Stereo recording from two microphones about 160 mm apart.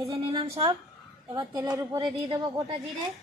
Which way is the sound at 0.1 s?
30° right (ahead or behind).